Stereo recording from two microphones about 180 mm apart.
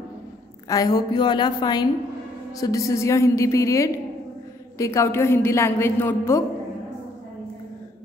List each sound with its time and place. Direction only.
0.7 s a woman's voice: 20° left (ahead or behind)